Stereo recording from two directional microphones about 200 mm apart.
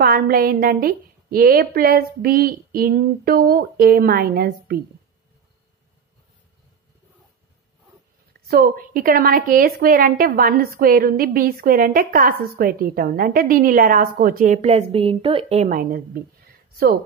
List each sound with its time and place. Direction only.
0.0 s a woman's voice: 50° right (ahead or behind)
8.5 s a woman's voice: 50° right (ahead or behind)